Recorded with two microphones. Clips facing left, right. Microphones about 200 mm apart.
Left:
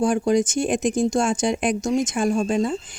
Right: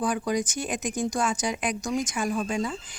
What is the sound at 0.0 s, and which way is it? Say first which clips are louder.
Speech: left 7 dB; 30° left (ahead or behind).